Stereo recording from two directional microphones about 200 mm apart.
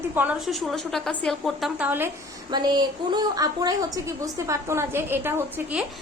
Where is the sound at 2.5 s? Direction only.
20° right (ahead or behind).